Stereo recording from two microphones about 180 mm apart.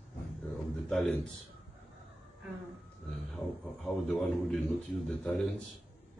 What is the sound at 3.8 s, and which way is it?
A man's voice, centre (ahead or behind).